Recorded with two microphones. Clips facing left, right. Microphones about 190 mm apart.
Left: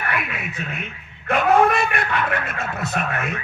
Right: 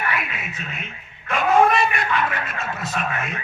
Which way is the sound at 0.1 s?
55° left (ahead or behind).